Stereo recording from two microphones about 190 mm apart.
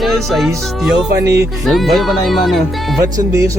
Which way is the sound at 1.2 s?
15° right (ahead or behind).